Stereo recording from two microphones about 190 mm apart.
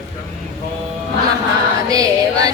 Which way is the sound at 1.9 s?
20° right (ahead or behind).